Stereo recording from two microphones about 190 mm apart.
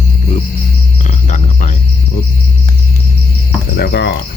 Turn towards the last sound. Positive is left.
turn(degrees=60)  # may be behind; listen again after turning